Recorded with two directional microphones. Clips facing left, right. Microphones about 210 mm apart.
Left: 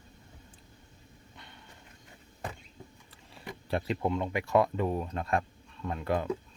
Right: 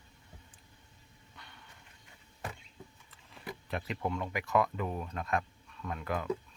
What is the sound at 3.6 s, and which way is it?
Speech, 30° left (ahead or behind).